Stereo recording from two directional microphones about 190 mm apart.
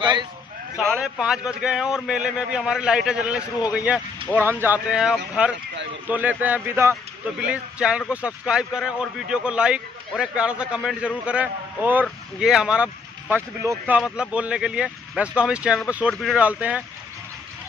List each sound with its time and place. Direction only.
0.0 s speech: 25° right (ahead or behind)
0.7 s a man's voice: centre (ahead or behind)